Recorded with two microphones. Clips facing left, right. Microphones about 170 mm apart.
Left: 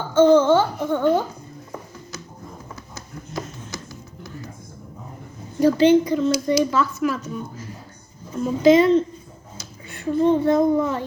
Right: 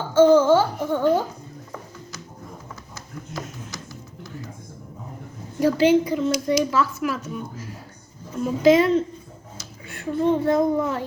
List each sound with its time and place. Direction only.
0.1 s a sound: 5° right (ahead or behind)
5.5 s a woman's voice: 5° right (ahead or behind)
6.3 s a child's voice: 35° left (ahead or behind)
6.7 s a woman's voice: 5° right (ahead or behind)
8.4 s a woman's voice: 5° right (ahead or behind)